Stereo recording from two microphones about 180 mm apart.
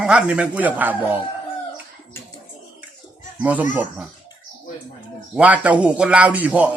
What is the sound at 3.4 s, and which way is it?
Speech, 10° right (ahead or behind).